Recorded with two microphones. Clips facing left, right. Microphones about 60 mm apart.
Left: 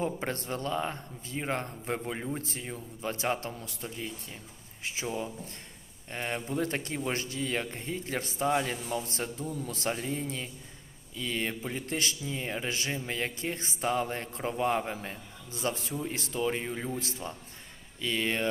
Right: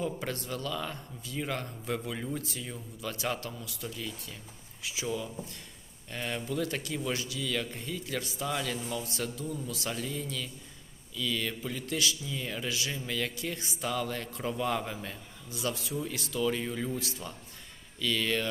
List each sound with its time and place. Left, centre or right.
0.0 s speech: left